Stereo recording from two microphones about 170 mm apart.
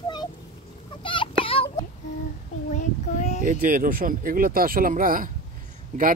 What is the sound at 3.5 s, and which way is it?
Speech, 50° right (ahead or behind).